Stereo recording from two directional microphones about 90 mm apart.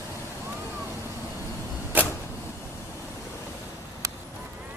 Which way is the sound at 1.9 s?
20° right (ahead or behind).